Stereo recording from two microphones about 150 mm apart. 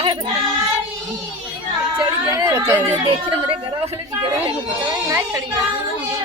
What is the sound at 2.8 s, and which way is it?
Speech, 35° right (ahead or behind).